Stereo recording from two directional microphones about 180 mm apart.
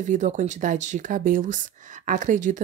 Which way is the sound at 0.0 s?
45° right (ahead or behind).